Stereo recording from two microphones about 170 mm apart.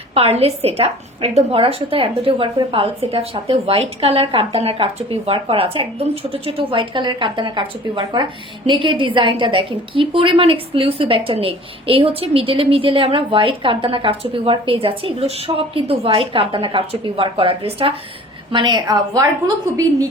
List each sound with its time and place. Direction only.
0.1 s a woman's voice: 35° right (ahead or behind)